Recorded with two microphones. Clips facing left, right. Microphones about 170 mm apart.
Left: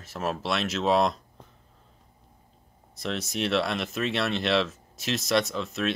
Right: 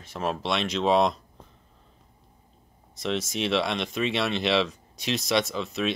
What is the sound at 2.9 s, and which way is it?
Speech, centre (ahead or behind).